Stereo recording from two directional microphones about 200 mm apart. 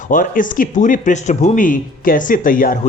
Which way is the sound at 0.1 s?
40° left (ahead or behind).